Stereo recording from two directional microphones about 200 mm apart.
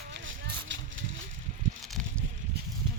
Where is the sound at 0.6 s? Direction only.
65° right (ahead or behind).